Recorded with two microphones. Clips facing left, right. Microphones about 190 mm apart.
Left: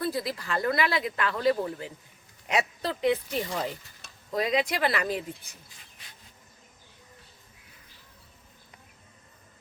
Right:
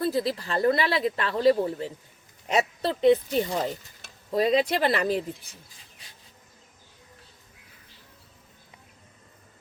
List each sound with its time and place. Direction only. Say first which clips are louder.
0.0 s speech: right 4 dB; 30° right (ahead or behind)